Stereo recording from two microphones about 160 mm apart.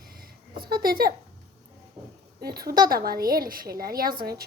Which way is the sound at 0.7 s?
70° right (ahead or behind).